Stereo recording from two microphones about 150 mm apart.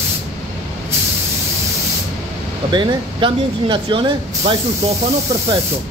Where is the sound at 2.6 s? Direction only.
30° right (ahead or behind).